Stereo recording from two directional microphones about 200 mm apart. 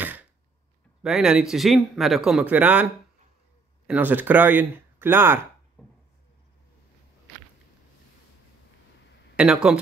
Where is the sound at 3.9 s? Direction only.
10° right (ahead or behind).